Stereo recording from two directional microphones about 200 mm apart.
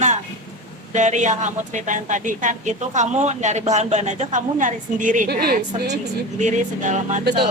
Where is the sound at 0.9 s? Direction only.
35° right (ahead or behind).